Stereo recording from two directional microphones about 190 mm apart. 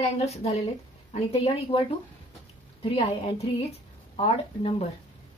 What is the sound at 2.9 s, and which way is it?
Speech, 30° left (ahead or behind).